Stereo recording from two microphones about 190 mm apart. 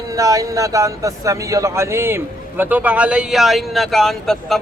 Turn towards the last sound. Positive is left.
turn(degrees=0)  # may be behind; listen again after turning